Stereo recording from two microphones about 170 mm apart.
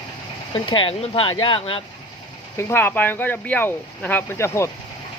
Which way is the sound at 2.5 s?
15° left (ahead or behind).